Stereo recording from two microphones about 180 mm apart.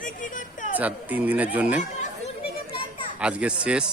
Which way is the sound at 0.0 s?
45° left (ahead or behind).